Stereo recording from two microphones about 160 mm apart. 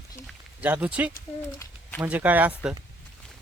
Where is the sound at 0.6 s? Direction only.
10° right (ahead or behind).